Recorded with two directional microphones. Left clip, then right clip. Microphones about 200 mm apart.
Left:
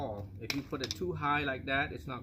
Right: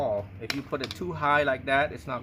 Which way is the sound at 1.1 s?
30° right (ahead or behind).